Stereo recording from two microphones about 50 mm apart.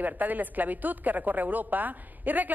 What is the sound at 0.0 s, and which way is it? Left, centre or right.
A woman's voice, right.